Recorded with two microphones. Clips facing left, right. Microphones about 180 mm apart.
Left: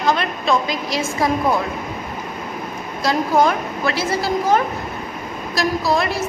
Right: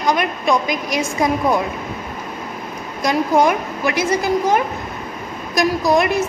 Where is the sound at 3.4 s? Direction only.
15° right (ahead or behind).